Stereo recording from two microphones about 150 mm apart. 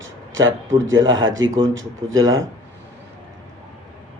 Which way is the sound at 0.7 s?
25° right (ahead or behind).